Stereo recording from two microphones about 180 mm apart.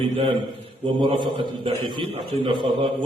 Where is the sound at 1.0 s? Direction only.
25° right (ahead or behind).